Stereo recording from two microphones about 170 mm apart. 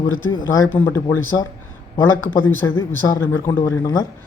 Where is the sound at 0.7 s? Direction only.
10° left (ahead or behind).